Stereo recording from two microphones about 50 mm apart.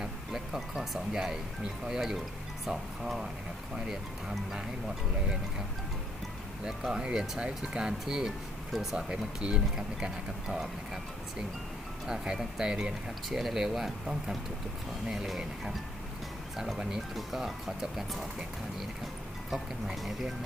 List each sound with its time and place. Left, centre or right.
0.0 s speech: centre
6.7 s speech: centre
9.0 s speech: right
12.0 s speech: centre
17.2 s speech: centre